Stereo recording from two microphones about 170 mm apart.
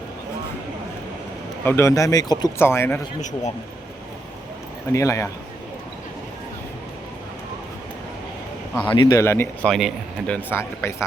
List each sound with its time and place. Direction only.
1.6 s speech: 15° left (ahead or behind)
4.9 s speech: 15° left (ahead or behind)
8.9 s speech: 25° left (ahead or behind)
9.6 s speech: 5° left (ahead or behind)